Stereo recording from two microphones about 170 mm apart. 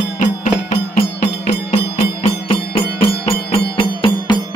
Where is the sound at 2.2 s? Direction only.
35° left (ahead or behind).